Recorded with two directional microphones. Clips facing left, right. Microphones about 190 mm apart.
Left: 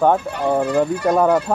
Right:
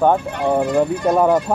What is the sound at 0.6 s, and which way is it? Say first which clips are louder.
Speech: right 1 dB; 15° right (ahead or behind).